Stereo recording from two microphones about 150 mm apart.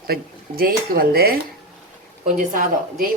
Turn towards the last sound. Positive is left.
turn(degrees=-65)  # may be behind; listen again after turning